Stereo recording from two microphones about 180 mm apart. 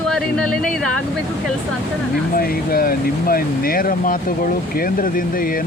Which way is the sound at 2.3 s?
55° left (ahead or behind).